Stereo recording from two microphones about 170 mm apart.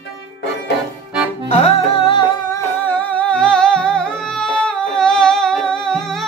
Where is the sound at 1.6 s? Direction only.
30° left (ahead or behind).